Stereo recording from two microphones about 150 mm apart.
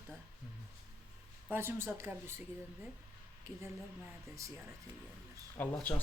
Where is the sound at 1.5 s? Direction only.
15° right (ahead or behind).